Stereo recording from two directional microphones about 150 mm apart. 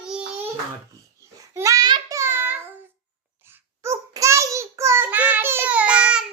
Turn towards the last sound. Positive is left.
turn(degrees=-5)  # may be behind; listen again after turning